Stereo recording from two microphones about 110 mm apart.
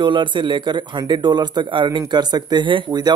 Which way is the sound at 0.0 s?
45° right (ahead or behind).